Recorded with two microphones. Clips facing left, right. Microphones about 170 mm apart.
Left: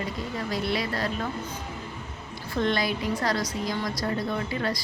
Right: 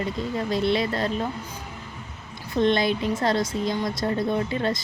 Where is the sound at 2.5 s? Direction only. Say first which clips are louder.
Right 5 dB; 20° right (ahead or behind).